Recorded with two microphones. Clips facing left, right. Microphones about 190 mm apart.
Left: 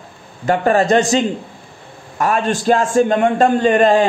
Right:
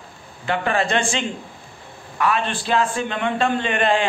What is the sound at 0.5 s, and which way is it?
A man's voice, 40° left (ahead or behind).